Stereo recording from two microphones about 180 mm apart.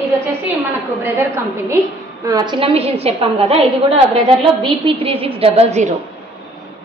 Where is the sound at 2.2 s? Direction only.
25° right (ahead or behind); by 5.9 s 40° right (ahead or behind).